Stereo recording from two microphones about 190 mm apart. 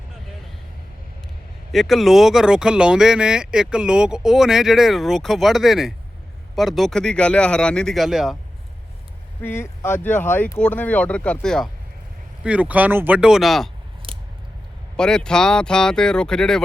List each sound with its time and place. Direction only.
1.7 s speech: centre (ahead or behind)
9.4 s speech: 10° left (ahead or behind)
14.0 s scissors: 25° right (ahead or behind)
14.9 s speech: 5° left (ahead or behind)